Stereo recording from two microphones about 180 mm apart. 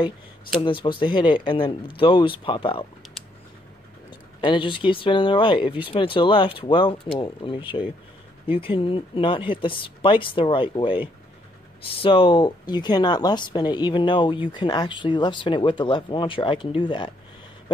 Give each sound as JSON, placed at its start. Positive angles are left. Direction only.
{"t": 0.6, "sound": "speech", "side_deg": 30}
{"t": 4.4, "sound": "speech", "side_deg": 30}